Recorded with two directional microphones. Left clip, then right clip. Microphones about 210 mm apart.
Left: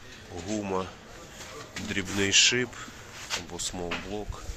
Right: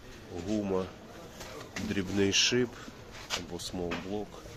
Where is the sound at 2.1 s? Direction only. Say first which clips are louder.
Left 4 dB; 30° right (ahead or behind).